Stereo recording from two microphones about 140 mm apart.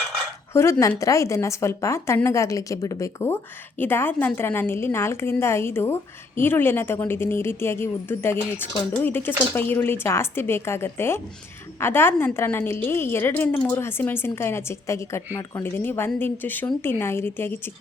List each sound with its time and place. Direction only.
0.5 s a woman's voice: 20° left (ahead or behind)